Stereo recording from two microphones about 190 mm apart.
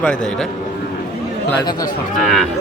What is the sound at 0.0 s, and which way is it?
Speech, 5° left (ahead or behind).